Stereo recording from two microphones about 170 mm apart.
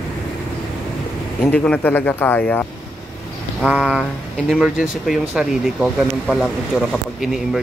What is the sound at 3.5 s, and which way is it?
Speech, 5° right (ahead or behind).